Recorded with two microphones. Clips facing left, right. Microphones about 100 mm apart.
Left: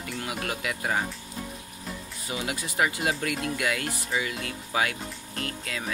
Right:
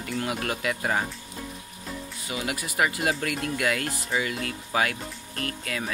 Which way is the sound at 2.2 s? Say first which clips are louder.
Even; 25° left (ahead or behind).